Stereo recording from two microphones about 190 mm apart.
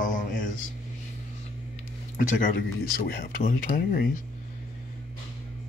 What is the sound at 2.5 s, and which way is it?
Speech, 50° left (ahead or behind).